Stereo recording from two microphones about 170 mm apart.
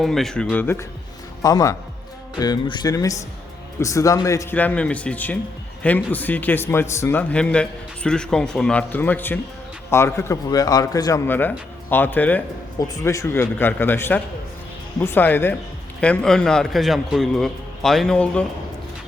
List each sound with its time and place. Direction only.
0.0 s a man's voice: centre (ahead or behind)